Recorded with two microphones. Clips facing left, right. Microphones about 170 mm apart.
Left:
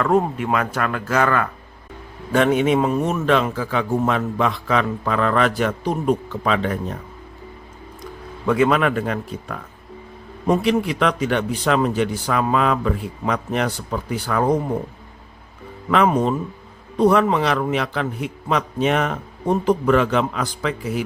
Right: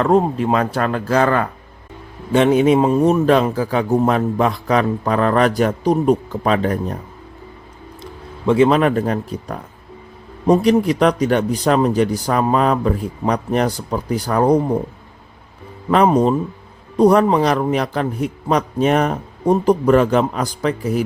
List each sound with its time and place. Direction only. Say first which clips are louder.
0.0 s a man's voice: right 4 dB; 30° right (ahead or behind)
8.4 s a man's voice: right 4 dB; 30° right (ahead or behind)
15.9 s a man's voice: right 4 dB; 35° right (ahead or behind)